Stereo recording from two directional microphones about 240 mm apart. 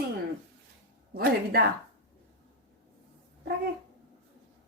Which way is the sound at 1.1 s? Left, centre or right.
Right.